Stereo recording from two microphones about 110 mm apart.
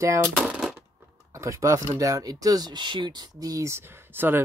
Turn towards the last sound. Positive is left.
turn(degrees=-20)  # may be behind; listen again after turning